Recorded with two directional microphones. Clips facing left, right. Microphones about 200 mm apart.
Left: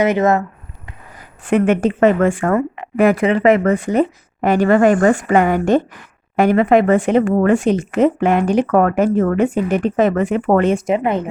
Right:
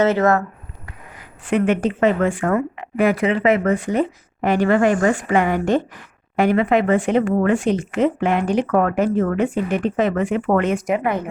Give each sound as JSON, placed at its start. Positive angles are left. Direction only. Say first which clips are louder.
{"t": 0.0, "sound": "speech", "louder": "left 2 dB", "side_deg": 15}
{"t": 1.5, "sound": "speech", "louder": "left 4 dB", "side_deg": 45}